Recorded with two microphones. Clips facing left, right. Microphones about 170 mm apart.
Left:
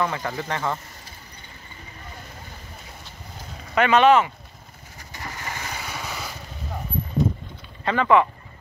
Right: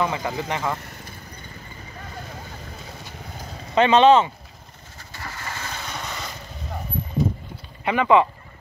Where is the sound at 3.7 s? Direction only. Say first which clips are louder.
Right 2 dB; 25° right (ahead or behind).